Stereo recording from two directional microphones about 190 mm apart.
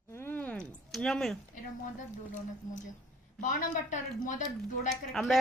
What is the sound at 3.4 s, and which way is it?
Speech, 40° left (ahead or behind).